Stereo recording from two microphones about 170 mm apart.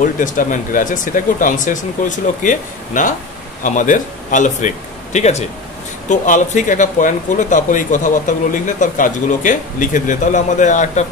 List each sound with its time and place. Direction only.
0.0 s a man's voice: 50° left (ahead or behind)